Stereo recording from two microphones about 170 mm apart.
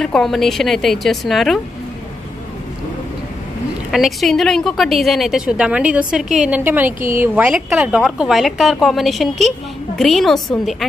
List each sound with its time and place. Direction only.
0.0 s a woman's voice: 5° left (ahead or behind)
3.9 s a woman's voice: centre (ahead or behind)